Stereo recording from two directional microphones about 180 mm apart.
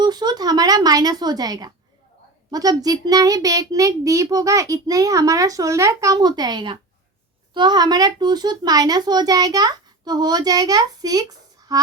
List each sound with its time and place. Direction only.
0.0 s a child's voice: 25° right (ahead or behind)